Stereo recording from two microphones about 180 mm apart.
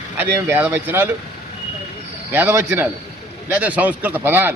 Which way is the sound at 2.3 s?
15° right (ahead or behind).